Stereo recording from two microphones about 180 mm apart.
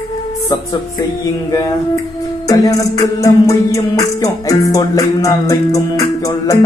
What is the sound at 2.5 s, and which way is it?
Music, 20° left (ahead or behind).